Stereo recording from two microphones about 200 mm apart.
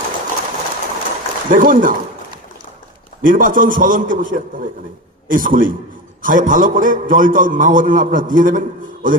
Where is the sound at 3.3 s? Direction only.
40° right (ahead or behind).